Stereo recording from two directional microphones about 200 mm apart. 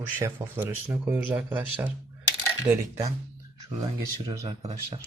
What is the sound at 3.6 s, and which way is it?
Speech, 20° right (ahead or behind).